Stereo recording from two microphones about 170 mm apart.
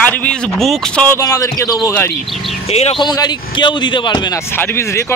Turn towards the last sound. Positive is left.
turn(degrees=15)  # may be behind; listen again after turning